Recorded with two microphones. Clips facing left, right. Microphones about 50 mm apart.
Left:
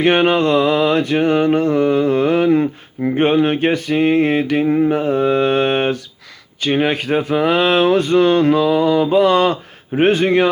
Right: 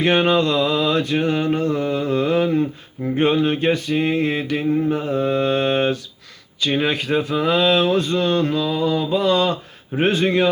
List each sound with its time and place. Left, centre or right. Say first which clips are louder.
0.0 s mantra: left 3 dB; left
6.7 s speech: left 4 dB; left
10.1 s mantra: left 3 dB; left